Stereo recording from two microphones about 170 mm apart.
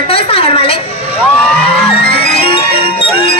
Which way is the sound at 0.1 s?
35° left (ahead or behind).